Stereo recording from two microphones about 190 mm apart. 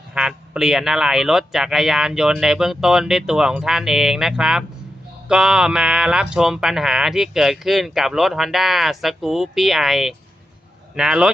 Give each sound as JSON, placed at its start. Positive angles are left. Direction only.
{"t": 0.1, "sound": "speech", "side_deg": -5}